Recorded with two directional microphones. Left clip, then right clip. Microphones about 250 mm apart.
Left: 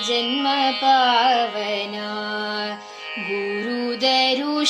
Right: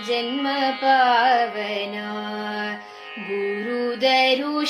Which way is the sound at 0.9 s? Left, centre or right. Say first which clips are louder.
Even; left.